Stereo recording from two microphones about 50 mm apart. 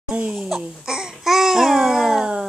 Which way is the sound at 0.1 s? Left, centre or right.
Centre.